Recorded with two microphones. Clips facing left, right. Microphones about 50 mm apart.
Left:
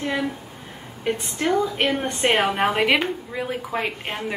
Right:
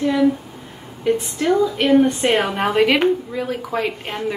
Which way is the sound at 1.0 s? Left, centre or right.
Left.